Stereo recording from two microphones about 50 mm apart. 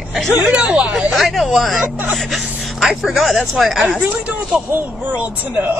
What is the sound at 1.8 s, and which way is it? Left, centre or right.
Speech, right.